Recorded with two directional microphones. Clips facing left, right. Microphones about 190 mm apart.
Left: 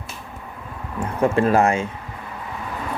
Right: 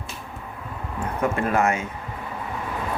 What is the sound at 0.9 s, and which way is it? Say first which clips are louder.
Speech: left 5 dB; 30° left (ahead or behind).